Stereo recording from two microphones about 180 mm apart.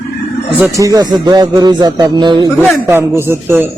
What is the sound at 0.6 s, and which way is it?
A man's voice, 15° right (ahead or behind).